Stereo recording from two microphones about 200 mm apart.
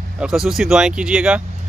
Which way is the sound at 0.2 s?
Centre (ahead or behind).